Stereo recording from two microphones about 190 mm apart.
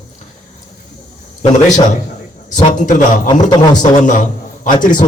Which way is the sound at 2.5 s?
40° left (ahead or behind).